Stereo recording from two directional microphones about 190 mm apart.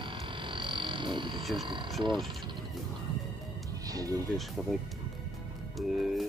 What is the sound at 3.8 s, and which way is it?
Music, 20° right (ahead or behind).